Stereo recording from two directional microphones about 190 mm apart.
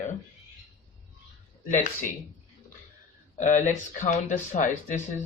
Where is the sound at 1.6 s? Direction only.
45° left (ahead or behind).